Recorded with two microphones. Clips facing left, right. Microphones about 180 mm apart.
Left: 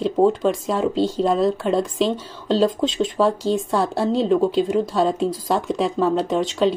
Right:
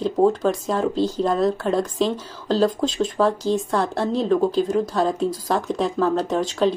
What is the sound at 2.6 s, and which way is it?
Speech, 25° left (ahead or behind).